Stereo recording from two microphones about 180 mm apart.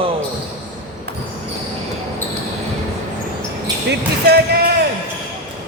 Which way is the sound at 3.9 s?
65° right (ahead or behind).